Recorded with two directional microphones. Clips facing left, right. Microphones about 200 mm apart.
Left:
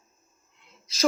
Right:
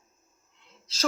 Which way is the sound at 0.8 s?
10° left (ahead or behind).